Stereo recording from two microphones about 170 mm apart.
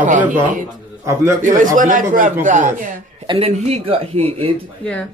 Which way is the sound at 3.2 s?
35° right (ahead or behind).